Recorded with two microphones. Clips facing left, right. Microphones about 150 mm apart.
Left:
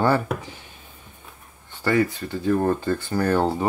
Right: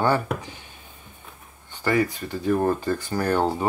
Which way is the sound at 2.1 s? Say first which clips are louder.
Left 1 dB; 15° right (ahead or behind).